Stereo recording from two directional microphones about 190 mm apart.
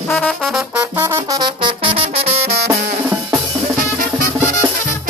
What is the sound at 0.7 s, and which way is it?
Brass instrument, 15° right (ahead or behind).